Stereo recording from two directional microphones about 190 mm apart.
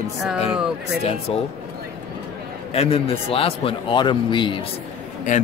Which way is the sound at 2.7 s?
30° left (ahead or behind).